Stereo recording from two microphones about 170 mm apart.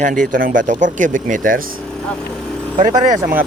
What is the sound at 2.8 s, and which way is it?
Speech, 50° right (ahead or behind).